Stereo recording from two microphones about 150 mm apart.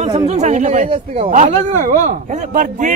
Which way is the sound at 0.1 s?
50° right (ahead or behind).